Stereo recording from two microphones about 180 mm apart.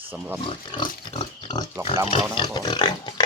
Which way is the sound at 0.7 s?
25° left (ahead or behind).